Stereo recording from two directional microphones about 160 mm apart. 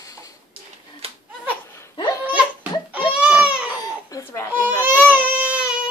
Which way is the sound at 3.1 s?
5° right (ahead or behind).